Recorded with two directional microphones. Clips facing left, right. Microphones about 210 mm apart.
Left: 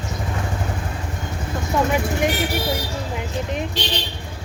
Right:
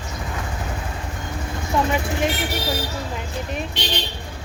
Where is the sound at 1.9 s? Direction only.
15° left (ahead or behind).